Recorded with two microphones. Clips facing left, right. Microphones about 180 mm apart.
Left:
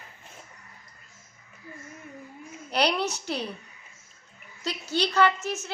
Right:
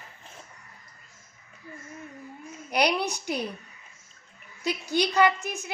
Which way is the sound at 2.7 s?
10° right (ahead or behind).